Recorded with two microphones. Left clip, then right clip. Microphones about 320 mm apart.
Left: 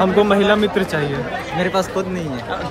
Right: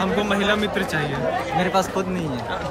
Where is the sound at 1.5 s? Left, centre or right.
Centre.